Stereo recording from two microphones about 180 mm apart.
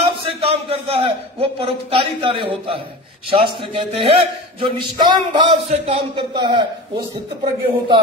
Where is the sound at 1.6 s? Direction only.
30° right (ahead or behind).